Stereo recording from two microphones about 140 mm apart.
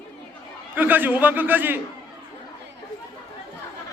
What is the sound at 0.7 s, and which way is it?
A man's voice, 10° right (ahead or behind).